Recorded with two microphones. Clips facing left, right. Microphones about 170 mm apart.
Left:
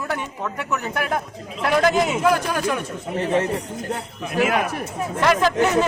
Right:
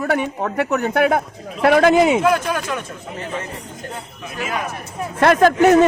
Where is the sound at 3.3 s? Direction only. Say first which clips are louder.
Left 8 dB; 70° left (ahead or behind).